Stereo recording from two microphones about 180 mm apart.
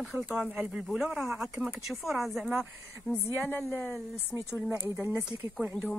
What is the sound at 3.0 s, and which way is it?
Speech, 5° left (ahead or behind).